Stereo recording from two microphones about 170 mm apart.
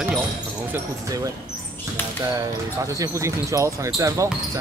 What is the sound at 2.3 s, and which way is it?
Speech, 20° right (ahead or behind).